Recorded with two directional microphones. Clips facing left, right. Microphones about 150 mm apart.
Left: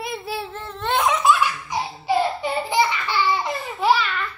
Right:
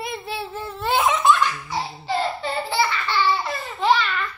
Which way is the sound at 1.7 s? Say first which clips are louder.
Left 3 dB; 15° left (ahead or behind).